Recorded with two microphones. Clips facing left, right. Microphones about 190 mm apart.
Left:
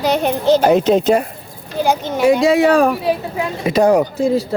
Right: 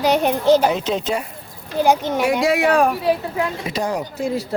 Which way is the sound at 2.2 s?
20° left (ahead or behind).